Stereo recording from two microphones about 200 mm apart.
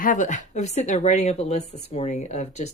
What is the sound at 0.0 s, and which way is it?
Speech, 40° left (ahead or behind).